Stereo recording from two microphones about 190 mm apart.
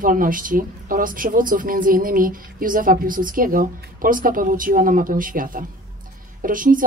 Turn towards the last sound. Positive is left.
turn(degrees=-45)  # may be behind; listen again after turning